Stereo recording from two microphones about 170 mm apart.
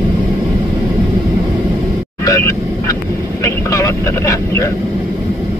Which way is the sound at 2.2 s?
20° left (ahead or behind).